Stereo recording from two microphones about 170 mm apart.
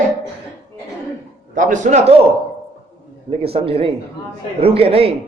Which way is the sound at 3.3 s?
35° right (ahead or behind).